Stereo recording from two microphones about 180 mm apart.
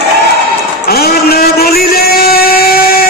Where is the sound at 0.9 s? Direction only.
60° left (ahead or behind).